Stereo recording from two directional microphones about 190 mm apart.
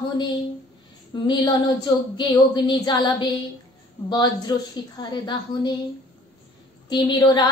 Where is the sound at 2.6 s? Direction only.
25° left (ahead or behind).